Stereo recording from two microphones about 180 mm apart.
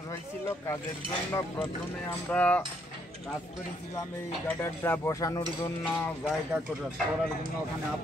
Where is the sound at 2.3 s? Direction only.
10° left (ahead or behind).